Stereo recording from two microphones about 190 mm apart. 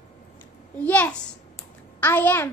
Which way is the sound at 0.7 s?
10° left (ahead or behind).